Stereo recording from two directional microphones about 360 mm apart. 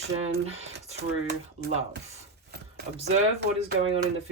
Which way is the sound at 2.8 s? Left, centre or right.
Centre.